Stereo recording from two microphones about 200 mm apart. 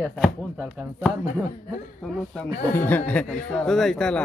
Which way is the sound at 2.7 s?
10° left (ahead or behind).